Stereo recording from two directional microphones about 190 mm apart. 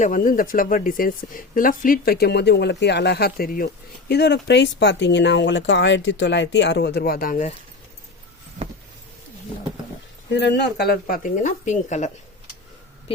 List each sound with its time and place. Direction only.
0.0 s speech: 45° left (ahead or behind)
4.1 s speech: 60° left (ahead or behind); by 7.5 s 45° left (ahead or behind)
10.3 s speech: 65° left (ahead or behind); by 12.1 s 40° left (ahead or behind)